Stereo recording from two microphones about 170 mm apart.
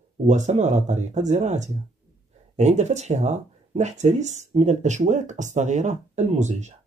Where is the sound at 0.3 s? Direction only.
45° right (ahead or behind).